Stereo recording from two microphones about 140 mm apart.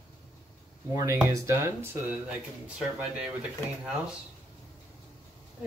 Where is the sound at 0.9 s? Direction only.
20° right (ahead or behind).